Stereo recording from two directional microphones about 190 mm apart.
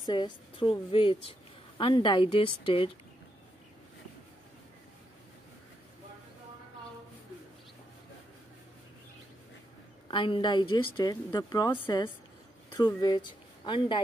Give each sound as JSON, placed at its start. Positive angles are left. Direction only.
{"t": 0.0, "sound": "a woman's voice", "side_deg": 25}
{"t": 10.1, "sound": "a woman's voice", "side_deg": 25}